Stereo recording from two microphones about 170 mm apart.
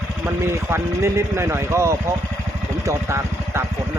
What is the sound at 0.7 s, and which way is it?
Speech, 15° right (ahead or behind).